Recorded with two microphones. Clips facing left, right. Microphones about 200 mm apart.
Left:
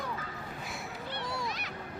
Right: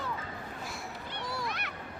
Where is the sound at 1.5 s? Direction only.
60° right (ahead or behind).